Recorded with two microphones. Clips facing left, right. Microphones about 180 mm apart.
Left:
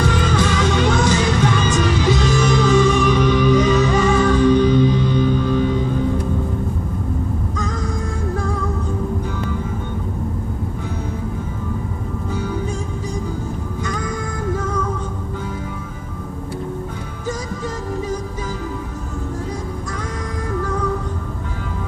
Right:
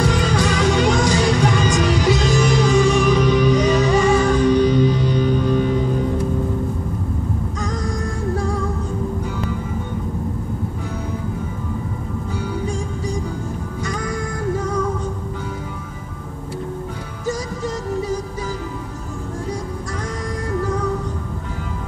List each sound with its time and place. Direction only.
0.2 s music: 40° right (ahead or behind)